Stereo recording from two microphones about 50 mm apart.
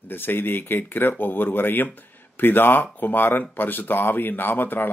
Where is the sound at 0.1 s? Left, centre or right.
Left.